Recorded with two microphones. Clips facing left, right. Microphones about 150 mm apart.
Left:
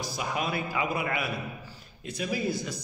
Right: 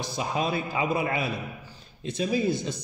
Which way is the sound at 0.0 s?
25° right (ahead or behind).